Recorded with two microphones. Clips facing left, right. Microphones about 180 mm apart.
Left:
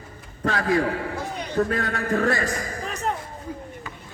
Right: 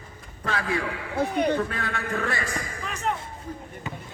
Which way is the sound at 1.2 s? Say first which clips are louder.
Right 8 dB; 60° right (ahead or behind).